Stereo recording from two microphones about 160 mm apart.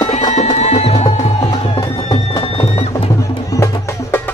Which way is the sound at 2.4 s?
40° left (ahead or behind).